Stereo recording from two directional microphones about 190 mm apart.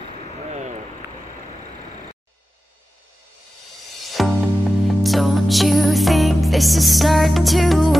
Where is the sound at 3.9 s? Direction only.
Centre (ahead or behind).